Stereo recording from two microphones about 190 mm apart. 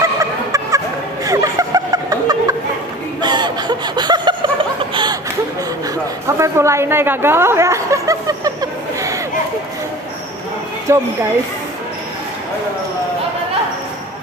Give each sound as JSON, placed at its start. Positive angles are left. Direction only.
{"t": 0.0, "sound": "a sound", "side_deg": -15}
{"t": 3.2, "sound": "chuckle", "side_deg": -20}
{"t": 6.2, "sound": "chuckle", "side_deg": -15}
{"t": 10.9, "sound": "speech", "side_deg": -15}